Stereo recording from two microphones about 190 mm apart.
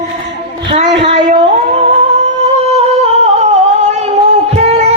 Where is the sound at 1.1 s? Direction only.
35° right (ahead or behind).